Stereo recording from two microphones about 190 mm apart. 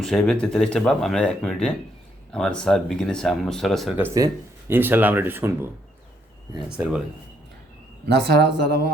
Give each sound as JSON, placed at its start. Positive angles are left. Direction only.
{"t": 0.0, "sound": "speech", "side_deg": 0}
{"t": 6.7, "sound": "speech", "side_deg": -5}
{"t": 8.0, "sound": "speech", "side_deg": -60}